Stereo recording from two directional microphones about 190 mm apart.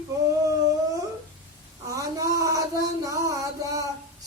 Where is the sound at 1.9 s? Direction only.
15° right (ahead or behind).